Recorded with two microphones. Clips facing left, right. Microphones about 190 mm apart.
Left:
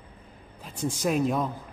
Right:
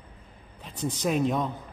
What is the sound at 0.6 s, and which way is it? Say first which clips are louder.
Speech: left 1 dB; 5° left (ahead or behind).